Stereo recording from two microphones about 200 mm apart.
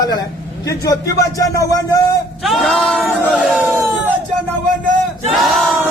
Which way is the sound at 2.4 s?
Centre (ahead or behind).